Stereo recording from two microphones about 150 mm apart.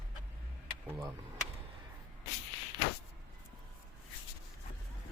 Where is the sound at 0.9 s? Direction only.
20° right (ahead or behind).